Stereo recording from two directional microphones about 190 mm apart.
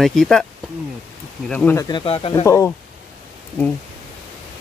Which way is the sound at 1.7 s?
20° left (ahead or behind).